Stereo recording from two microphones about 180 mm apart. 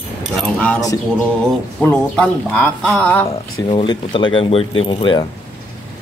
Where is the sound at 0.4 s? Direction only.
5° left (ahead or behind).